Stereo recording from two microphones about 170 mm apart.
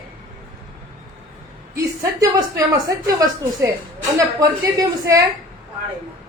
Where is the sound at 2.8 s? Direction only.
20° right (ahead or behind).